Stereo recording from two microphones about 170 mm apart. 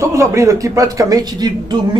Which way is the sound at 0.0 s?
15° right (ahead or behind).